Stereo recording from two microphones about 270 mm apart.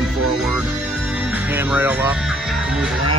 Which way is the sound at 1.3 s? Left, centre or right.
Centre.